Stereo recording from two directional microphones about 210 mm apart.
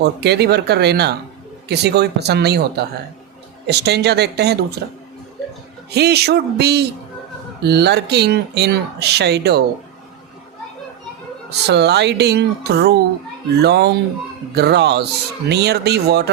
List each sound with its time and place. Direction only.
0.0 s speech: 50° right (ahead or behind)
5.9 s speech: 50° right (ahead or behind)
11.4 s speech: 55° right (ahead or behind)